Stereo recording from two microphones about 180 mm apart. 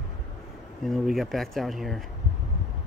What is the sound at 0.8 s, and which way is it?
Speech, centre (ahead or behind).